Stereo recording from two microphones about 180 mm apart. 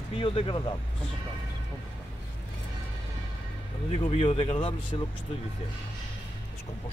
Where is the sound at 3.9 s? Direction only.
30° left (ahead or behind).